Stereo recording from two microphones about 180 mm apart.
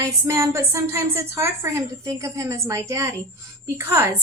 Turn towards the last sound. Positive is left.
turn(degrees=-15)  # may be behind; listen again after turning